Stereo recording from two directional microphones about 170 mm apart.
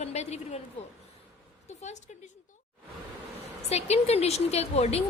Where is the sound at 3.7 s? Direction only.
40° left (ahead or behind).